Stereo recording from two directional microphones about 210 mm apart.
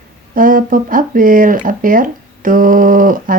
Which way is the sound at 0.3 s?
40° right (ahead or behind).